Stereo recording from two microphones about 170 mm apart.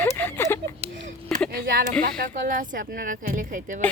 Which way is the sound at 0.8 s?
45° right (ahead or behind).